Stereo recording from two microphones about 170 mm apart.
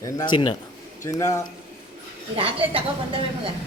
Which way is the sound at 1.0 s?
20° left (ahead or behind).